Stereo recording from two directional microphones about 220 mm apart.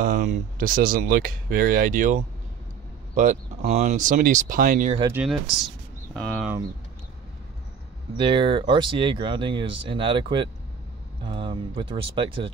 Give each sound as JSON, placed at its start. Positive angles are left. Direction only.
{"t": 0.0, "sound": "speech", "side_deg": -40}
{"t": 5.1, "sound": "speech", "side_deg": -5}
{"t": 8.2, "sound": "speech", "side_deg": -20}